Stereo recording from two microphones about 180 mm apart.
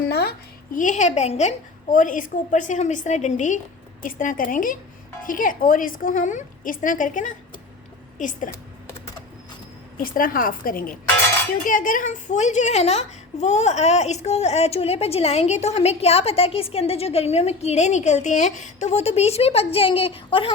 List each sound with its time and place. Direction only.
0.1 s a woman's voice: 60° left (ahead or behind)
10.0 s a woman's voice: 50° left (ahead or behind); by 20.5 s 30° left (ahead or behind)